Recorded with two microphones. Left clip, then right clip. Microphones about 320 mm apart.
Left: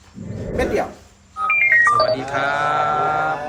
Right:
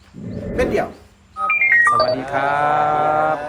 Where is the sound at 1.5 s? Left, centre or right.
Centre.